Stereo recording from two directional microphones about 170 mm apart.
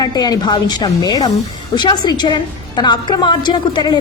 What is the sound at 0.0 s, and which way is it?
A woman's voice, 25° left (ahead or behind).